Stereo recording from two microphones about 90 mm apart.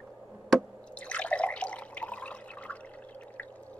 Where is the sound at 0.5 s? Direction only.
15° left (ahead or behind).